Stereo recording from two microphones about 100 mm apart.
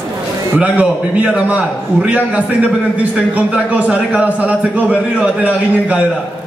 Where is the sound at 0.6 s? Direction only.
10° right (ahead or behind).